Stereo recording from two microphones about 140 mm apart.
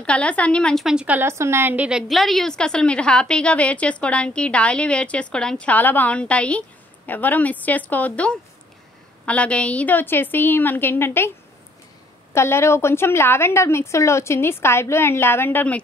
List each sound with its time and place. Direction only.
0.0 s a woman's voice: 10° left (ahead or behind)
12.4 s a woman's voice: 20° left (ahead or behind)